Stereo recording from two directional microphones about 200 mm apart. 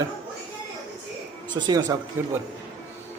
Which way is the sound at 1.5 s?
20° right (ahead or behind).